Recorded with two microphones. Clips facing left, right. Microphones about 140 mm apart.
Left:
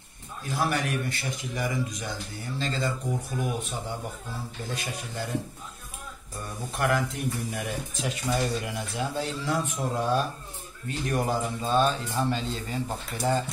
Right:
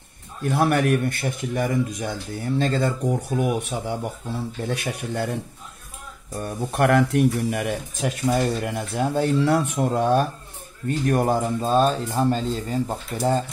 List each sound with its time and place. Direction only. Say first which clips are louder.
0.4 s speech: right 8 dB; 60° right (ahead or behind)
4.6 s speech: right 7 dB; 65° right (ahead or behind)
6.3 s speech: right 9 dB; 60° right (ahead or behind)
11.7 s speech: right 4 dB; 40° right (ahead or behind)